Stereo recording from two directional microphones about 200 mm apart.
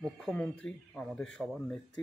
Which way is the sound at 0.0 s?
5° left (ahead or behind).